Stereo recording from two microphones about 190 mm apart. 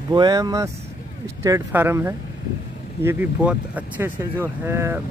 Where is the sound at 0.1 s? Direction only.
20° right (ahead or behind).